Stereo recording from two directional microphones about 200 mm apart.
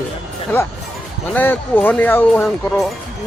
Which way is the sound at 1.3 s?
10° left (ahead or behind).